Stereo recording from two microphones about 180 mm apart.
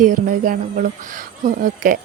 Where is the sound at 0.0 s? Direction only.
45° right (ahead or behind).